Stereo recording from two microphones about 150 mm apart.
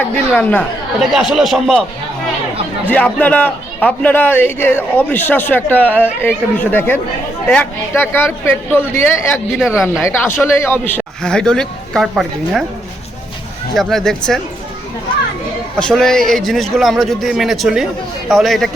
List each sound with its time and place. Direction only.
0.0 s a man's voice: 10° left (ahead or behind)
1.1 s a man's voice: centre (ahead or behind)
2.9 s a man's voice: 10° left (ahead or behind)
9.6 s a man's voice: 5° right (ahead or behind)
10.0 s a man's voice: 15° left (ahead or behind); by 12.6 s centre (ahead or behind)
13.7 s a man's voice: centre (ahead or behind)
15.8 s a man's voice: 5° left (ahead or behind)